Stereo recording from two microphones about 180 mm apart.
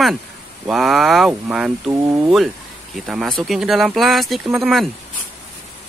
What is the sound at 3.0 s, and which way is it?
Speech, centre (ahead or behind).